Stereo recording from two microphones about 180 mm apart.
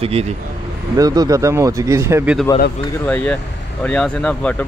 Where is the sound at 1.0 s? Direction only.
20° right (ahead or behind).